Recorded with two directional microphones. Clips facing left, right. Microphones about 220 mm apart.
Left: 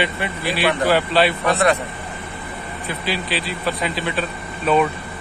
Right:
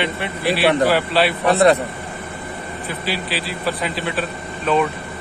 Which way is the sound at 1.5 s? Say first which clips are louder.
Right 8 dB; 35° right (ahead or behind).